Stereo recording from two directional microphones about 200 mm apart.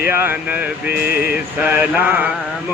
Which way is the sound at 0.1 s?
10° right (ahead or behind).